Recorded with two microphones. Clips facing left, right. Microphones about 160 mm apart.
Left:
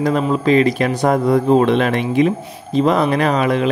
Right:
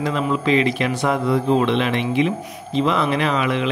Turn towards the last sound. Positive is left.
turn(degrees=40)  # may be behind; listen again after turning